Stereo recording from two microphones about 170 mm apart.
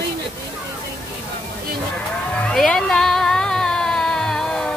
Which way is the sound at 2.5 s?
5° left (ahead or behind).